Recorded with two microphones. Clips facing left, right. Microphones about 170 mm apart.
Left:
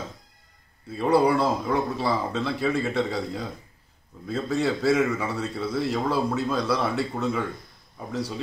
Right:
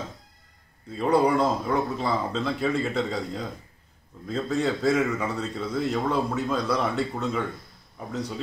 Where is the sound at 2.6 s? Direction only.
5° left (ahead or behind).